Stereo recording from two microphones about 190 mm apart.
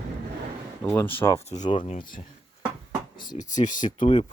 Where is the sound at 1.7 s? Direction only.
30° left (ahead or behind).